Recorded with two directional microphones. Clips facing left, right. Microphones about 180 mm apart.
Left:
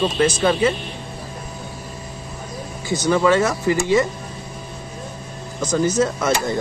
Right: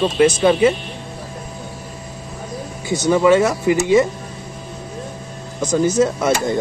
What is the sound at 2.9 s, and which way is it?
Speech, 15° right (ahead or behind).